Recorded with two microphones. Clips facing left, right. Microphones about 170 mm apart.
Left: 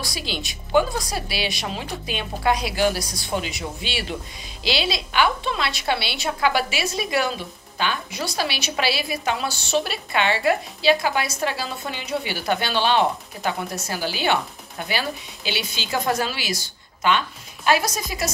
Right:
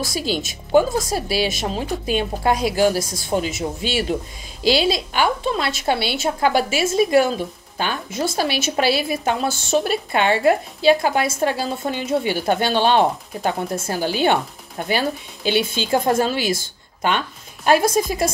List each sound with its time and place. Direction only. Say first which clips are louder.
0.0 s a woman's voice: right 7 dB; 45° right (ahead or behind)